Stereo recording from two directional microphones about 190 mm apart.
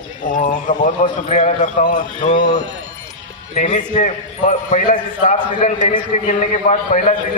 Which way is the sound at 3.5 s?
40° left (ahead or behind).